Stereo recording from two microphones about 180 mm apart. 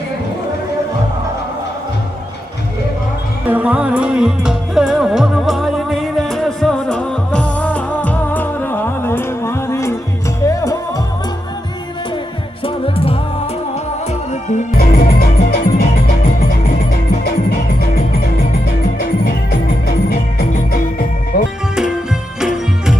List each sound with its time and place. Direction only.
3.4 s music: 10° right (ahead or behind); by 11.0 s 20° left (ahead or behind)
12.6 s music: 30° left (ahead or behind)
14.8 s music: 60° left (ahead or behind)
18.9 s music: 60° left (ahead or behind)
22.4 s music: 5° right (ahead or behind)